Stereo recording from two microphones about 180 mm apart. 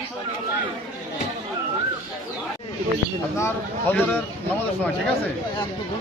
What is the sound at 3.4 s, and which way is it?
Speech, 10° left (ahead or behind).